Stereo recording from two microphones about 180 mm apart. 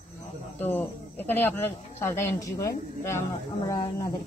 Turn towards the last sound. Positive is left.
turn(degrees=20)  # may be behind; listen again after turning